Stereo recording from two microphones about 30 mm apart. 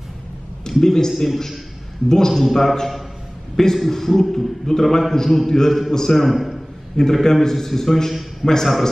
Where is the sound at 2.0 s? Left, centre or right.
Centre.